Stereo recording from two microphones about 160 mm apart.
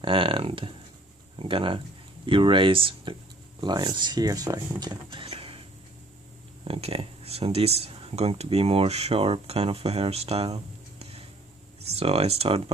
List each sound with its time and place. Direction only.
0.0 s speech: 35° right (ahead or behind)
6.7 s speech: 35° right (ahead or behind)